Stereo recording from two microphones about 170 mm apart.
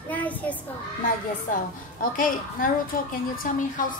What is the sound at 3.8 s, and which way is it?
Speech, 50° left (ahead or behind).